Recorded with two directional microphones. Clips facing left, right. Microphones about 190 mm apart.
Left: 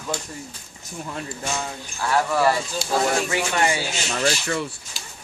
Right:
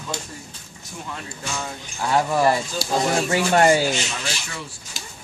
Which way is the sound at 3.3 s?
45° right (ahead or behind).